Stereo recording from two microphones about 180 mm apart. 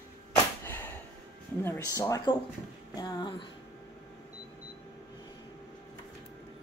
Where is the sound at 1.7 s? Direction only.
20° left (ahead or behind).